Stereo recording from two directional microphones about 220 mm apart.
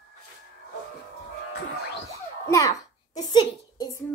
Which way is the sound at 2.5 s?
15° left (ahead or behind).